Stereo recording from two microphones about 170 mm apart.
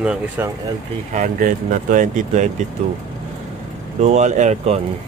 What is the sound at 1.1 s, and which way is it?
Speech, 50° right (ahead or behind).